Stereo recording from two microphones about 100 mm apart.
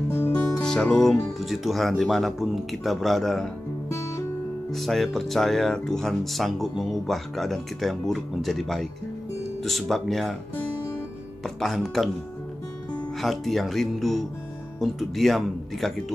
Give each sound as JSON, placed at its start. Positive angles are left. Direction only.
{"t": 0.1, "sound": "music", "side_deg": 20}
{"t": 0.6, "sound": "speech", "side_deg": 10}
{"t": 4.6, "sound": "speech", "side_deg": 0}
{"t": 11.4, "sound": "speech", "side_deg": 0}
{"t": 13.2, "sound": "speech", "side_deg": 0}